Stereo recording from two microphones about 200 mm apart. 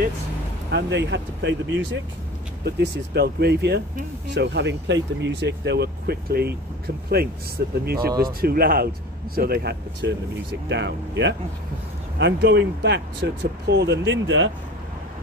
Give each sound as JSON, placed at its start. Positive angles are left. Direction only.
{"t": 0.7, "sound": "speech", "side_deg": -60}